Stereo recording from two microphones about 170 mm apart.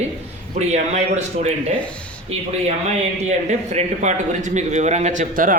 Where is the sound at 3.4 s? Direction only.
45° right (ahead or behind).